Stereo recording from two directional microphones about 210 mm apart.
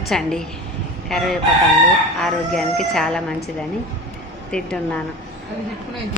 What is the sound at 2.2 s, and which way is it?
A woman's voice, centre (ahead or behind).